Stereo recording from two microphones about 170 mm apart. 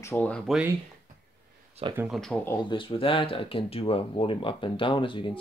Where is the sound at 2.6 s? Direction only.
30° left (ahead or behind).